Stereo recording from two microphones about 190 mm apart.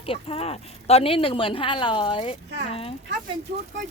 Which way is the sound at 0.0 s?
30° left (ahead or behind).